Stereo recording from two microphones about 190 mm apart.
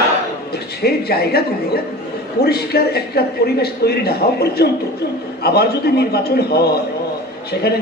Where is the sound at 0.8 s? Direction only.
55° left (ahead or behind).